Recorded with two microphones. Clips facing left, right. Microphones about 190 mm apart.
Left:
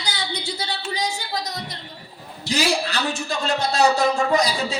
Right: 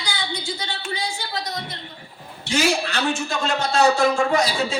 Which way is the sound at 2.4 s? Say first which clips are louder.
Right 1 dB; 35° left (ahead or behind).